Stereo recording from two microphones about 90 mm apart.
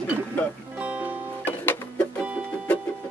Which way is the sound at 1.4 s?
20° left (ahead or behind).